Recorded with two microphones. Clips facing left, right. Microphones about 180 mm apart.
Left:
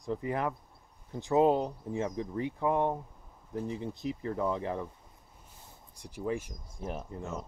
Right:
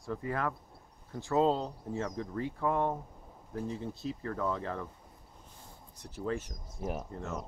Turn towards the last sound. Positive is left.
turn(degrees=10)  # may be behind; listen again after turning